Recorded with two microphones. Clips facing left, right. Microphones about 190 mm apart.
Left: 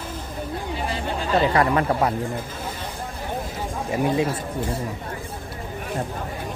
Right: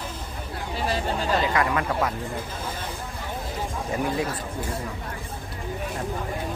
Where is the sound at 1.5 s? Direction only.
35° left (ahead or behind).